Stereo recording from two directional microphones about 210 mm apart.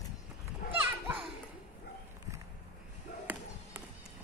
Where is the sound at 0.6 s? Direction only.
45° left (ahead or behind).